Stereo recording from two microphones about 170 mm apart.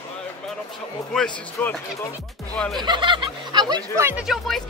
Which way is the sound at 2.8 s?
30° right (ahead or behind).